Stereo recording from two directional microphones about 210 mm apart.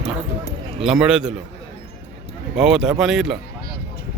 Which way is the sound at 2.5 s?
5° right (ahead or behind).